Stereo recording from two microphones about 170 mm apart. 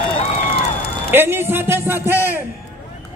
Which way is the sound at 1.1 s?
15° right (ahead or behind).